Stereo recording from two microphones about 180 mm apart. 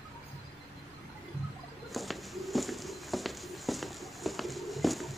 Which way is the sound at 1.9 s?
Centre (ahead or behind).